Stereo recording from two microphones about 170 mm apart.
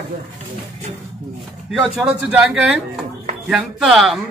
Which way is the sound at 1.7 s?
5° right (ahead or behind).